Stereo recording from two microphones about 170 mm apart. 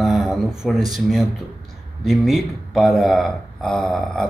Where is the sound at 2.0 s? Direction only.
Centre (ahead or behind).